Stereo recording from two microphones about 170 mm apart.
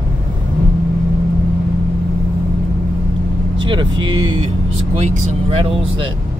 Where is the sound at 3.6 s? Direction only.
30° right (ahead or behind).